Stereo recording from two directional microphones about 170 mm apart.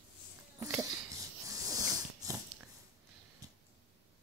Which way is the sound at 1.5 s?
20° right (ahead or behind).